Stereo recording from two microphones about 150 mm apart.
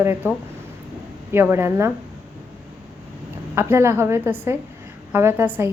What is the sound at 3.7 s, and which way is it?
A woman's voice, 15° right (ahead or behind).